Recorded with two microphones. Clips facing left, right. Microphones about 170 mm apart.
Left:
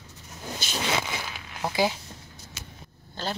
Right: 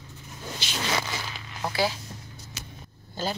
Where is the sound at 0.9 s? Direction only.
15° left (ahead or behind).